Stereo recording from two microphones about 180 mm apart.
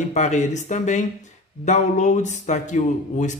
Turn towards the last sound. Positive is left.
turn(degrees=40)  # may be behind; listen again after turning